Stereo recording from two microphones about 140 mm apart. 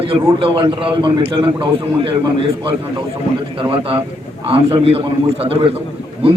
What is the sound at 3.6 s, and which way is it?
A man's voice, 40° right (ahead or behind).